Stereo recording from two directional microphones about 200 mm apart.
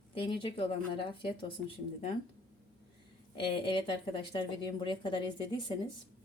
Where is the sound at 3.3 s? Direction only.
25° left (ahead or behind).